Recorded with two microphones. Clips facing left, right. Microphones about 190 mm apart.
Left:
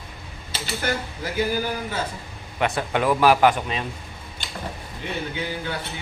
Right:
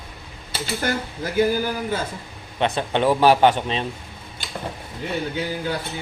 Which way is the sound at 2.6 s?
25° right (ahead or behind).